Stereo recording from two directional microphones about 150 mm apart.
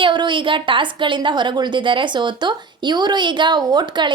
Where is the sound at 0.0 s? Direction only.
30° right (ahead or behind).